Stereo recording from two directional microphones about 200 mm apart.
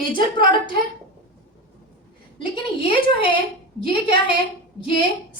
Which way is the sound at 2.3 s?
25° left (ahead or behind).